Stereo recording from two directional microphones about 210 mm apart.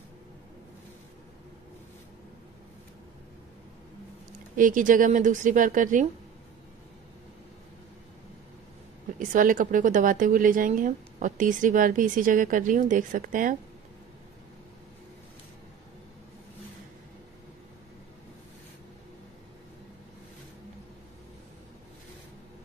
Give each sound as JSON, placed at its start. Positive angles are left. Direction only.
{"t": 4.6, "sound": "speech", "side_deg": -40}
{"t": 9.3, "sound": "speech", "side_deg": -40}